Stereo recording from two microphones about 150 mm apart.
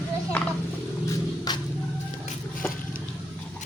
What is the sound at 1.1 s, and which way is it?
Music, 25° left (ahead or behind).